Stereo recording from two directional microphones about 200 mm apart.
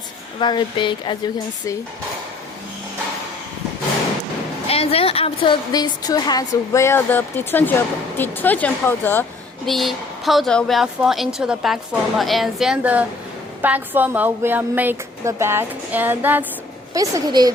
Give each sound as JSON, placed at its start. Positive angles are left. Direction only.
{"t": 0.3, "sound": "a woman's voice", "side_deg": 25}
{"t": 4.7, "sound": "a woman's voice", "side_deg": 30}
{"t": 9.6, "sound": "a woman's voice", "side_deg": 0}